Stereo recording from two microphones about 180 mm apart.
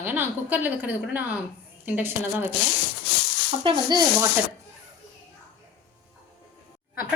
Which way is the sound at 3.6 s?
25° right (ahead or behind).